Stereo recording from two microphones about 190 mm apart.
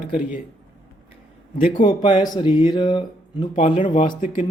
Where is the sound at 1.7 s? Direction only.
25° left (ahead or behind).